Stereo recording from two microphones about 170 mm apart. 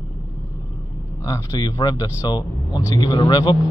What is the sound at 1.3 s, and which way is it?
Speech, 20° left (ahead or behind).